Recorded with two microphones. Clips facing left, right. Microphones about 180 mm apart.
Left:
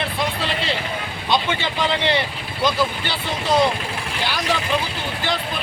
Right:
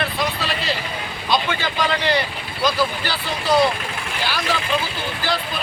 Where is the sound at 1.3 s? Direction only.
25° left (ahead or behind).